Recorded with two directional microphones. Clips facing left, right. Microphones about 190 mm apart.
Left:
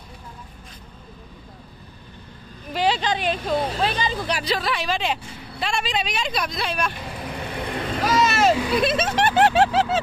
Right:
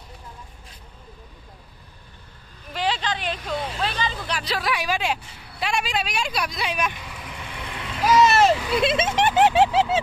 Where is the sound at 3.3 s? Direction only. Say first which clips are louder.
Left 5 dB; 30° left (ahead or behind).